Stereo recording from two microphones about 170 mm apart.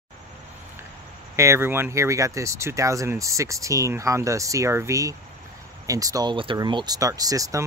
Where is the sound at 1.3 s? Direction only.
15° right (ahead or behind).